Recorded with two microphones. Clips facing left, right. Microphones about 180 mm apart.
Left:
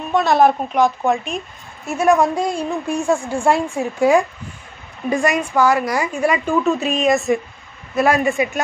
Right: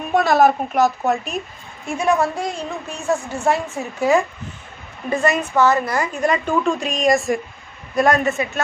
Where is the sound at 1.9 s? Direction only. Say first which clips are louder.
Left 3 dB; 10° left (ahead or behind).